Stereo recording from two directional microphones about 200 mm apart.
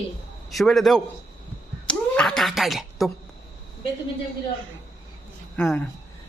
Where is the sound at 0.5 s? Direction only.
Centre (ahead or behind).